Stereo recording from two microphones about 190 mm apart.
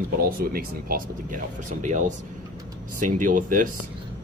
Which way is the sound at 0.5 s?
50° right (ahead or behind).